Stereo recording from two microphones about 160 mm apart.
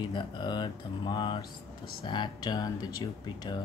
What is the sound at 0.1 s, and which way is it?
Speech, 30° left (ahead or behind).